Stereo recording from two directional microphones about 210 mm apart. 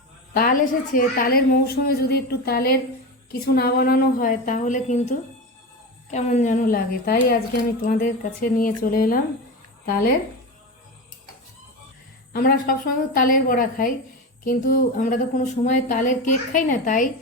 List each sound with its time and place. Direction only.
0.3 s a woman's voice: 40° left (ahead or behind)
12.3 s a woman's voice: 45° left (ahead or behind)